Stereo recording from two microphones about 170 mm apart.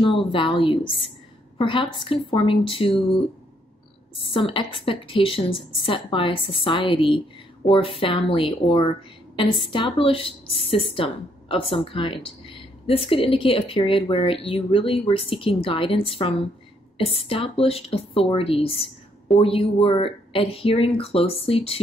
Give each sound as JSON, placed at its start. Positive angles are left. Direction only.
{"t": 0.0, "sound": "a woman's voice", "side_deg": 30}